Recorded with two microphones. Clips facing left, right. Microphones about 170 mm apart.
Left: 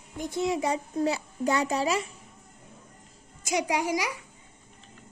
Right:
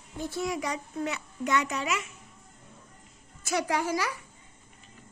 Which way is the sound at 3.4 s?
15° left (ahead or behind).